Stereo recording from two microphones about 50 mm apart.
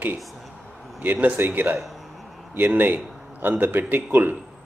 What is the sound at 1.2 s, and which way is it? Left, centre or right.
A man's voice, right.